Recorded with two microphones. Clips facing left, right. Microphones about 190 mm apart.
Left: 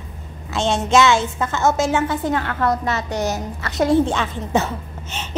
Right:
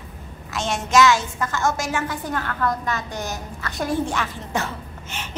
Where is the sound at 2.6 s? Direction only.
70° left (ahead or behind).